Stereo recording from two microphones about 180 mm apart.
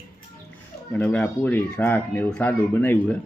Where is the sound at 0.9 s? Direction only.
5° left (ahead or behind).